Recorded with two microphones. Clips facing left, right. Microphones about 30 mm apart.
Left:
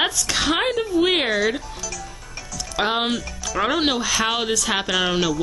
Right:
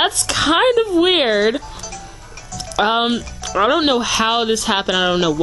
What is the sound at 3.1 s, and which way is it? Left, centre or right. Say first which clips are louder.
Music: right 4 dB; right.